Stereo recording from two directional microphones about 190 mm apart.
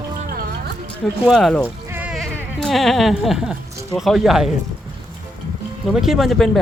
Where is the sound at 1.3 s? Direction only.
Centre (ahead or behind).